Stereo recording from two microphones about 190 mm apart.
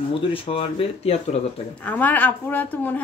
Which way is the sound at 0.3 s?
30° left (ahead or behind).